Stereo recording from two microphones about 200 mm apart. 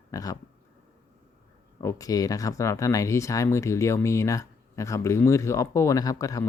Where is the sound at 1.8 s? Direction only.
15° left (ahead or behind).